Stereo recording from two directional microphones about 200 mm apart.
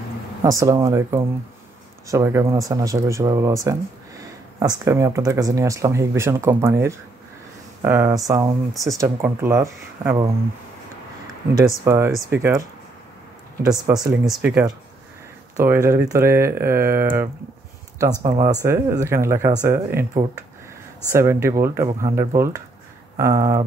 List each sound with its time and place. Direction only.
0.4 s speech: 15° right (ahead or behind)
11.8 s speech: 15° right (ahead or behind)
21.1 s speech: 15° right (ahead or behind)